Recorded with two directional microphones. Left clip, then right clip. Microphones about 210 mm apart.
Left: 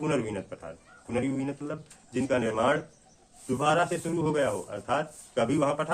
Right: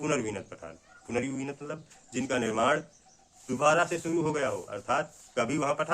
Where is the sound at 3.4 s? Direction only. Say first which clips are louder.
Right 1 dB; 20° right (ahead or behind).